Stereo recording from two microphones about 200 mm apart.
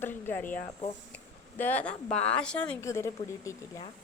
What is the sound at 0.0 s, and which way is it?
Speech, 10° left (ahead or behind).